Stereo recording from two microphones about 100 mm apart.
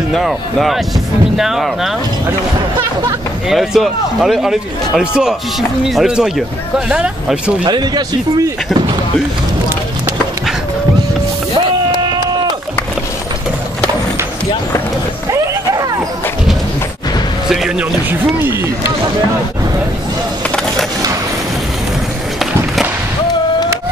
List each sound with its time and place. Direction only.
0.1 s a man's voice: centre (ahead or behind)
3.4 s a man's voice: centre (ahead or behind)
7.6 s speech: 45° right (ahead or behind)
15.3 s a sound: 40° right (ahead or behind)
17.5 s music: 5° right (ahead or behind)
18.4 s a sound: 20° right (ahead or behind)